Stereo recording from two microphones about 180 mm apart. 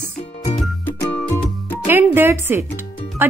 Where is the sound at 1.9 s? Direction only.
10° right (ahead or behind).